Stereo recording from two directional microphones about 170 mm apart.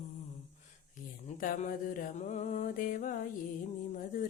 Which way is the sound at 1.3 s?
55° left (ahead or behind).